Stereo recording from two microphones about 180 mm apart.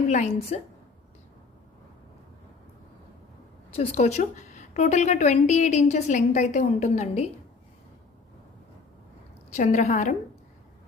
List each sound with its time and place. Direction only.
0.1 s a woman's voice: 40° left (ahead or behind)
3.8 s a woman's voice: 40° left (ahead or behind)
9.5 s a woman's voice: 40° left (ahead or behind)